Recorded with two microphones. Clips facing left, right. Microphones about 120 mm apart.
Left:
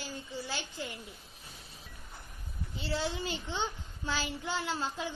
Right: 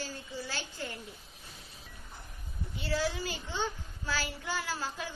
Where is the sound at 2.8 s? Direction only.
25° left (ahead or behind).